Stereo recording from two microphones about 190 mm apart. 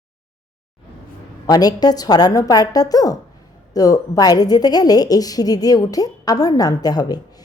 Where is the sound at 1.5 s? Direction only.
20° left (ahead or behind).